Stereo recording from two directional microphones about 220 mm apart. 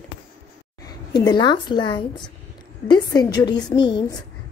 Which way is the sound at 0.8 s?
20° left (ahead or behind).